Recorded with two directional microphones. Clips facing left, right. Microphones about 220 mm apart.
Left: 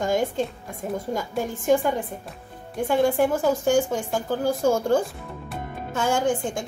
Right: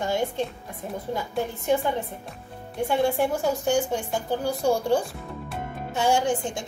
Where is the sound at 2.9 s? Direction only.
45° left (ahead or behind).